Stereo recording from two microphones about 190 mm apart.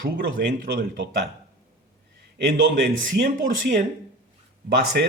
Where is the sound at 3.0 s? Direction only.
45° right (ahead or behind).